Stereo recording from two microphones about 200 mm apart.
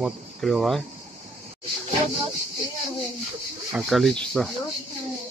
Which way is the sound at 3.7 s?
Centre (ahead or behind).